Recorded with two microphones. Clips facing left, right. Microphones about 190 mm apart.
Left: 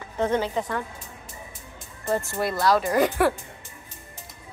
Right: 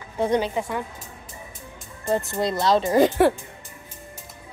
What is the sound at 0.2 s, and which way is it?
Speech, 15° right (ahead or behind).